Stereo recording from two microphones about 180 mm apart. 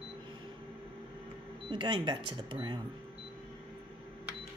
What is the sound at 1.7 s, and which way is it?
Speech, 25° right (ahead or behind).